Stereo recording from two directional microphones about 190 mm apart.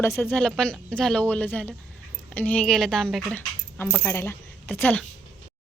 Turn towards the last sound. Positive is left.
turn(degrees=10)  # may be behind; listen again after turning